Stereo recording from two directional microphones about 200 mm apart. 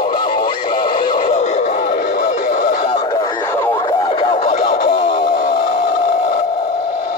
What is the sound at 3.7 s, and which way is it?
Radio, 25° left (ahead or behind).